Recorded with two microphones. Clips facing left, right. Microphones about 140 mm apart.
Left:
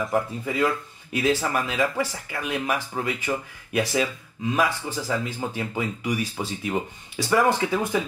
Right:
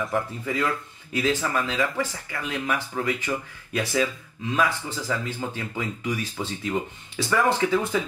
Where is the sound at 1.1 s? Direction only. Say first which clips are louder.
Left 1 dB; 15° left (ahead or behind).